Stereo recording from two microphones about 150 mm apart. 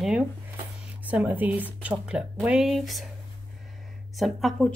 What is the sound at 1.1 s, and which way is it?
Speech, 10° right (ahead or behind).